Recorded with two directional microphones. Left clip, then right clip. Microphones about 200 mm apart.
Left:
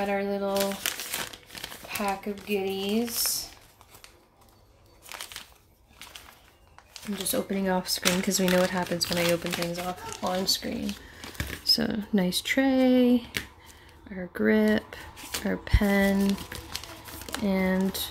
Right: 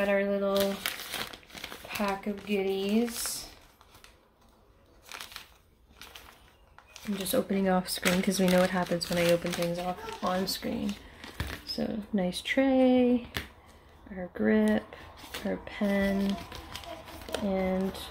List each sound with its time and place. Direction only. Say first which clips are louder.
0.0 s speech: right 1 dB; 5° left (ahead or behind)
5.1 s crumpling: left 3 dB; 5° left (ahead or behind)
6.9 s speech: even; centre (ahead or behind)
11.6 s speech: left 11 dB; 25° left (ahead or behind)
17.5 s speech: left 3 dB; 30° left (ahead or behind)